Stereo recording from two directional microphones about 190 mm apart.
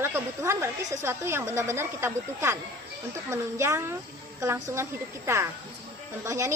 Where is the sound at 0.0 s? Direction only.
15° right (ahead or behind).